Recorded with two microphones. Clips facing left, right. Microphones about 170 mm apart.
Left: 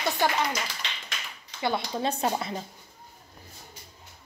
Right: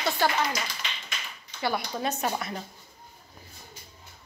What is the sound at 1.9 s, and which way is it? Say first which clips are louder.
Speech: left 2 dB; 30° left (ahead or behind).